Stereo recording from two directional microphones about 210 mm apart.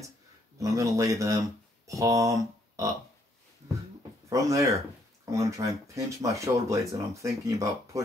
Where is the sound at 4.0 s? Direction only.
15° right (ahead or behind).